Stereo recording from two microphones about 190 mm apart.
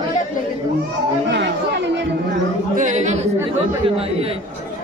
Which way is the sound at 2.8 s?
40° right (ahead or behind).